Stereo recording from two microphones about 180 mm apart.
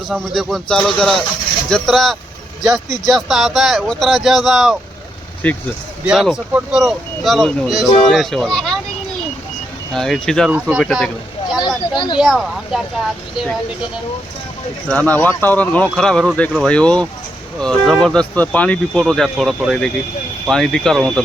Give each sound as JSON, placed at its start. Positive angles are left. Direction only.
{"t": 0.1, "sound": "speech", "side_deg": 0}
{"t": 6.1, "sound": "speech", "side_deg": -5}
{"t": 9.9, "sound": "speech", "side_deg": 5}
{"t": 11.9, "sound": "speech", "side_deg": 25}
{"t": 12.2, "sound": "speech", "side_deg": 0}
{"t": 14.8, "sound": "speech", "side_deg": 10}